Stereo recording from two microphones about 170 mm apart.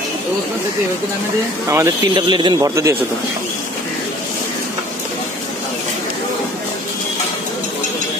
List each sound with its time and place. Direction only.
1.7 s speech: 20° right (ahead or behind)